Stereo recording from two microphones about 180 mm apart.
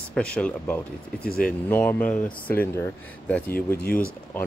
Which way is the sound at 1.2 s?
55° left (ahead or behind).